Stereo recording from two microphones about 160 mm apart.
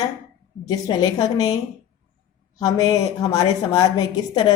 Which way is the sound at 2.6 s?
25° left (ahead or behind).